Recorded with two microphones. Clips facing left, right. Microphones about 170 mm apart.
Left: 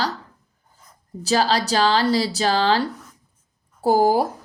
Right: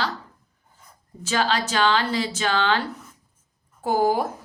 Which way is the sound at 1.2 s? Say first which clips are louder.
Left 4 dB; 35° left (ahead or behind).